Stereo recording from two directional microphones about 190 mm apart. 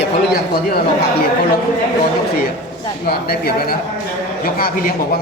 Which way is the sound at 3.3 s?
55° left (ahead or behind).